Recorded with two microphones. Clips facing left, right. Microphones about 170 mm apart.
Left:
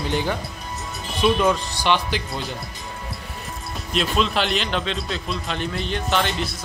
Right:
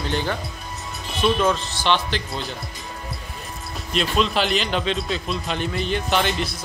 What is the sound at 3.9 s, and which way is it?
A man's voice, centre (ahead or behind).